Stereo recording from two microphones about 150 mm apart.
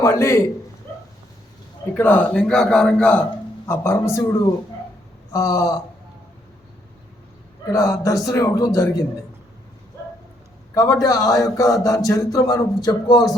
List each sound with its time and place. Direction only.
0.0 s speech: 20° left (ahead or behind)
2.0 s a man's voice: 10° left (ahead or behind)
3.7 s speech: 15° left (ahead or behind)
7.7 s speech: 20° left (ahead or behind)
10.8 s speech: 20° left (ahead or behind)